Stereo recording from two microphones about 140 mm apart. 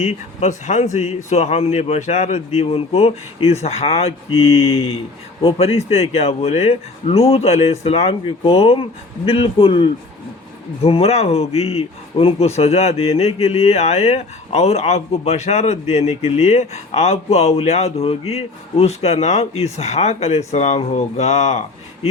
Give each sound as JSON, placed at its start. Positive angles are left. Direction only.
{"t": 0.0, "sound": "speech", "side_deg": 50}